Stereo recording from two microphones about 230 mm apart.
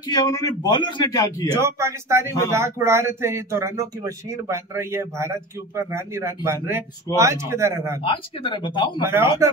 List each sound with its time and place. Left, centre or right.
0.1 s a man's voice: centre
1.6 s speech: centre
8.0 s speech: left